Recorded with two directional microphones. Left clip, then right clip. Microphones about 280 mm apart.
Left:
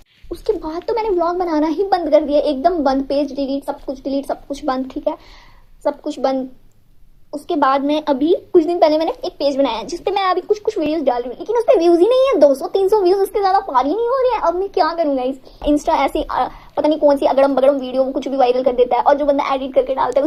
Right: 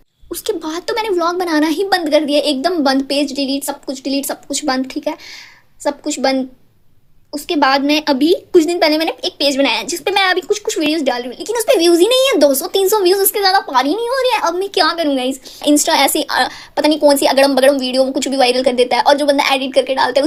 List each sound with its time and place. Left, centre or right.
0.3 s speech: right